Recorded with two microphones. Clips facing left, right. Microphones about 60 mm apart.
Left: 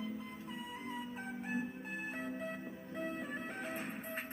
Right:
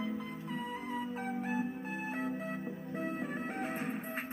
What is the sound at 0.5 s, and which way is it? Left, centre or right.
Music, right.